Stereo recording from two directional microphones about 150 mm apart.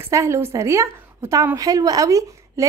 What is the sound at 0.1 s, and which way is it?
A woman's voice, 20° right (ahead or behind).